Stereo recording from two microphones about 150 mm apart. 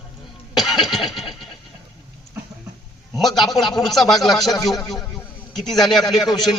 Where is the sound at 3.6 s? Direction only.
Centre (ahead or behind).